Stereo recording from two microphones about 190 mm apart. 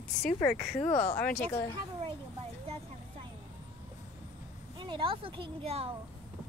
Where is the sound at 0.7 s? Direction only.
30° left (ahead or behind).